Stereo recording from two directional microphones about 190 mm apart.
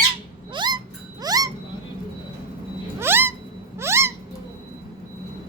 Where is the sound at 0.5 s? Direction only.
25° right (ahead or behind).